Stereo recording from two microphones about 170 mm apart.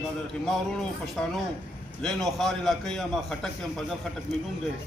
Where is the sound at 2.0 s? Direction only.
Centre (ahead or behind).